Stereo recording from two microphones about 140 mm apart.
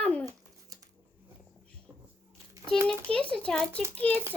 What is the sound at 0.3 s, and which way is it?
Babbling, 25° right (ahead or behind).